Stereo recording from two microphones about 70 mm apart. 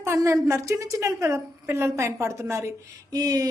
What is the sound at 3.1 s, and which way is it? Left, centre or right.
Speech, right.